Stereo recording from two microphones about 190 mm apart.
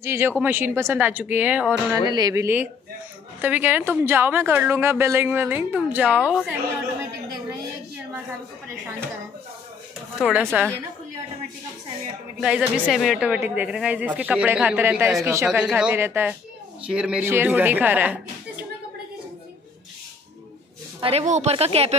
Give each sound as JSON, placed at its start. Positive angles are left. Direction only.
{"t": 0.0, "sound": "a woman's voice", "side_deg": -15}
{"t": 2.0, "sound": "a woman's voice", "side_deg": -20}
{"t": 10.2, "sound": "a woman's voice", "side_deg": -5}
{"t": 12.4, "sound": "a woman's voice", "side_deg": -5}
{"t": 21.0, "sound": "speech", "side_deg": -35}